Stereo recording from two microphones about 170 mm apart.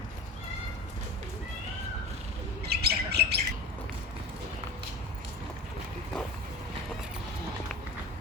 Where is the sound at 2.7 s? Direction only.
70° right (ahead or behind).